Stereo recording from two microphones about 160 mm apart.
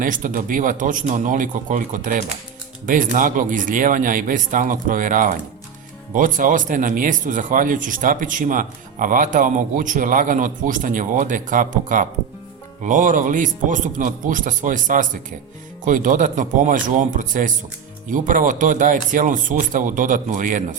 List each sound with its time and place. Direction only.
0.0 s speech: 55° right (ahead or behind)